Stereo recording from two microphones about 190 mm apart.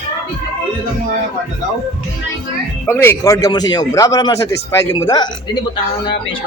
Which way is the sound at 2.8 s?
10° left (ahead or behind).